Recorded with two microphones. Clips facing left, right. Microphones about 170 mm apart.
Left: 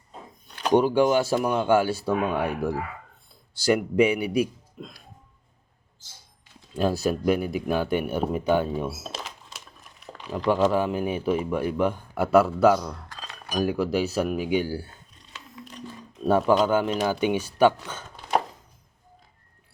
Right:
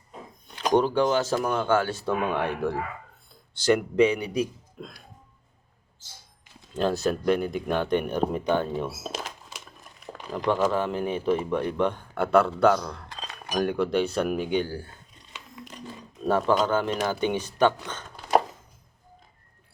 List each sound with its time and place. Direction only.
0.7 s speech: 10° left (ahead or behind)
6.7 s speech: 10° left (ahead or behind)
10.6 s speech: 10° left (ahead or behind)
13.1 s chink: 20° right (ahead or behind)
13.6 s speech: 5° left (ahead or behind)
16.2 s speech: 10° left (ahead or behind)